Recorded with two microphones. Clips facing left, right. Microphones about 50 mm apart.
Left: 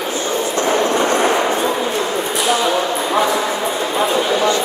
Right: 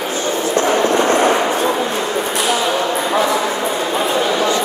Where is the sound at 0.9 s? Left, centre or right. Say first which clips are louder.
Right 2 dB; right.